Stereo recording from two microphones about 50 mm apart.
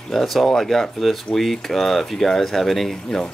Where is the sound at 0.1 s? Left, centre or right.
Centre.